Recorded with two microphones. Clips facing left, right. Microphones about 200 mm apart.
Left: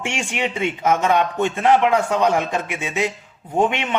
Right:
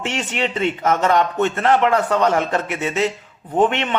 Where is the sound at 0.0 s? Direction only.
10° left (ahead or behind).